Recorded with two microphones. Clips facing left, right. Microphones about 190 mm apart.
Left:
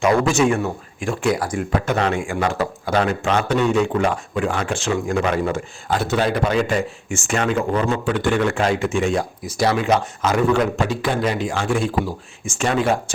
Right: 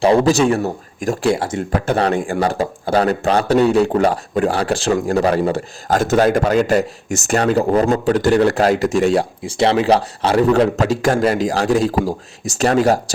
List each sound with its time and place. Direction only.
0.0 s speech: 30° right (ahead or behind)
1.3 s speech: 25° right (ahead or behind)
9.1 s speech: 30° right (ahead or behind)